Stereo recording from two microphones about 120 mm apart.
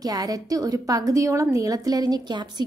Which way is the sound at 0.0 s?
30° right (ahead or behind).